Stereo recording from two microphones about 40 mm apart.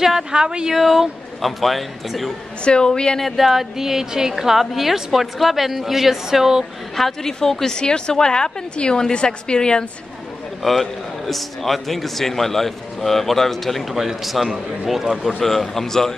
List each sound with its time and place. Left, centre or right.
0.3 s speech: right
0.7 s a woman's voice: centre
2.6 s a woman's voice: left
3.2 s a woman's voice: centre
7.0 s a woman's voice: centre
10.6 s a woman's voice: centre
15.4 s a woman's voice: centre